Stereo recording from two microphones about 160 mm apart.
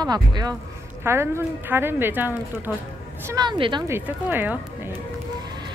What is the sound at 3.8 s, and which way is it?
Speech, 15° right (ahead or behind).